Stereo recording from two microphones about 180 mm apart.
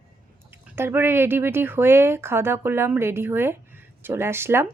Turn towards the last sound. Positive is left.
turn(degrees=-15)  # may be behind; listen again after turning